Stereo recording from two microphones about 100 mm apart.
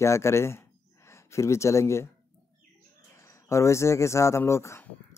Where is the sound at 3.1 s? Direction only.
30° left (ahead or behind).